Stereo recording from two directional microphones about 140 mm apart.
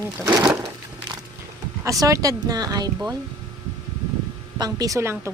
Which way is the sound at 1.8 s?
25° right (ahead or behind).